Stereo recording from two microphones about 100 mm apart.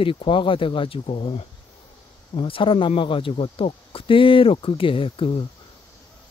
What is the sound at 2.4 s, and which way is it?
Speech, 60° left (ahead or behind).